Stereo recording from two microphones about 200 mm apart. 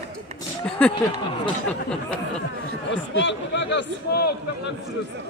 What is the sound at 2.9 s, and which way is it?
A man's voice, 65° left (ahead or behind).